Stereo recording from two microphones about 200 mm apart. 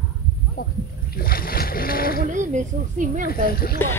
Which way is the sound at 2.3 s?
40° right (ahead or behind).